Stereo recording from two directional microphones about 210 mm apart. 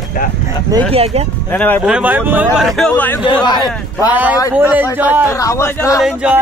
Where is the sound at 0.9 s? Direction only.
30° right (ahead or behind).